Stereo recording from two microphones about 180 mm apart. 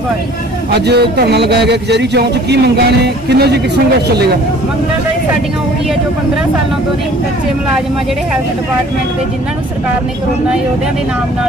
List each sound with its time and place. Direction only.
0.7 s speech: 65° right (ahead or behind)